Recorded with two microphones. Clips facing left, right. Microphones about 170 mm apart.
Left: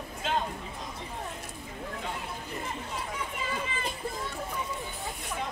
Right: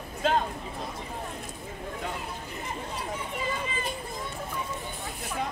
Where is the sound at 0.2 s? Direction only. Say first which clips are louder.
Right 5 dB; 40° right (ahead or behind).